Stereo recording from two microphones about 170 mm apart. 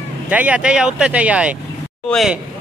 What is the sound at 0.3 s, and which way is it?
Speech, 10° right (ahead or behind).